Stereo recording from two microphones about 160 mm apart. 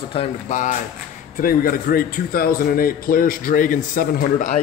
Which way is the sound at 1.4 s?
65° left (ahead or behind).